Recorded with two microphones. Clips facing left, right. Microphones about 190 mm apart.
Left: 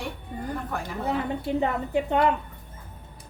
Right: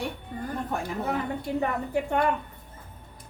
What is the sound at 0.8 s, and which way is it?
A woman's voice, 20° left (ahead or behind).